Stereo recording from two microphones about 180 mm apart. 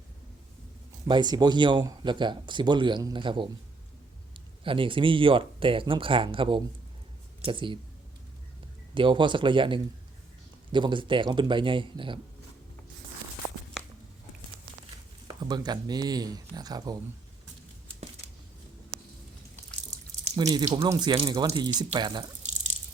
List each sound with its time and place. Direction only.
1.0 s speech: 25° right (ahead or behind)
9.0 s speech: 25° right (ahead or behind)
15.3 s speech: 25° right (ahead or behind)
20.3 s speech: 20° right (ahead or behind)